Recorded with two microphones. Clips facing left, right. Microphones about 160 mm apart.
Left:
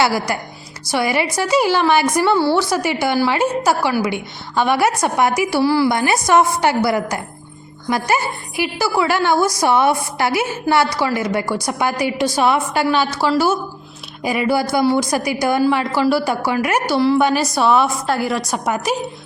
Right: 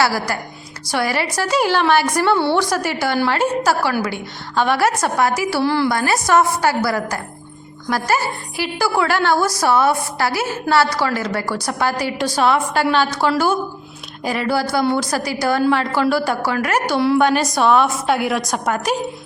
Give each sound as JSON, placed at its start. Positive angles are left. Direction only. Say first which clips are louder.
{"t": 0.0, "sound": "a woman's voice", "louder": "left 1 dB", "side_deg": 15}
{"t": 5.9, "sound": "a woman's voice", "louder": "left 1 dB", "side_deg": 15}